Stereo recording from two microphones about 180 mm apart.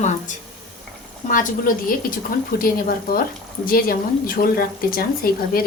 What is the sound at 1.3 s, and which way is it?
Speech, 50° left (ahead or behind).